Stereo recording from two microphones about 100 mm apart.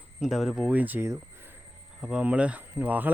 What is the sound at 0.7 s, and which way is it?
Speech, 15° right (ahead or behind).